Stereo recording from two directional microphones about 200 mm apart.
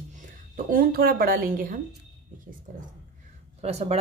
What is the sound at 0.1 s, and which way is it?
A woman's voice, 40° right (ahead or behind).